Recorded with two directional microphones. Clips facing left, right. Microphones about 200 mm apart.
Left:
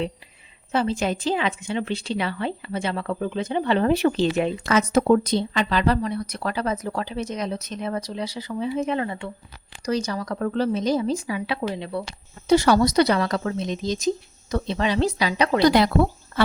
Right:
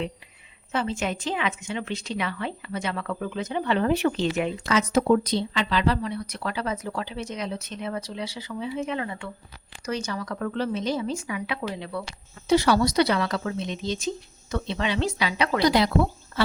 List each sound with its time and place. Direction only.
0.7 s speech: 35° left (ahead or behind)
4.6 s speech: 50° left (ahead or behind); by 12.0 s 25° left (ahead or behind)
12.5 s speech: 45° left (ahead or behind)
15.6 s speech: 50° left (ahead or behind)